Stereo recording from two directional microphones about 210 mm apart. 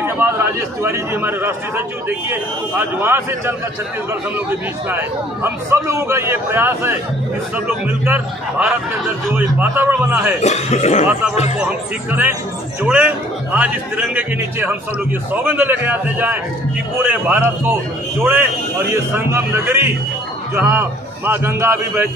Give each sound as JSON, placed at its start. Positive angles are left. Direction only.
{"t": 0.2, "sound": "a man's voice", "side_deg": -10}
{"t": 10.4, "sound": "speech", "side_deg": 30}
{"t": 11.5, "sound": "a man's voice", "side_deg": -5}